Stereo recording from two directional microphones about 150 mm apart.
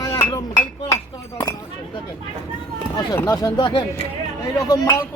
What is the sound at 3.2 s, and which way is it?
Speech, 20° left (ahead or behind).